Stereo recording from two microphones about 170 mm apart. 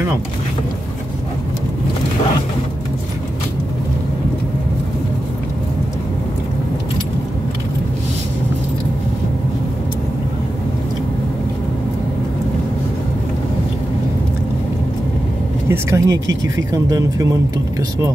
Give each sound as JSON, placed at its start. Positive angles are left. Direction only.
{"t": 15.7, "sound": "speech", "side_deg": -20}